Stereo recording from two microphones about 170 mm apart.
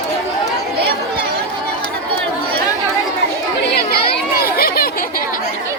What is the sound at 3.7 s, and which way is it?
Chatter, 65° left (ahead or behind).